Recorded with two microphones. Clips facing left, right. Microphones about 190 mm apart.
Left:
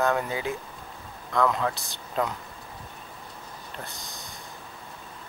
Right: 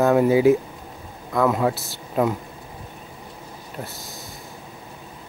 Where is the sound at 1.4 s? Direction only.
15° right (ahead or behind).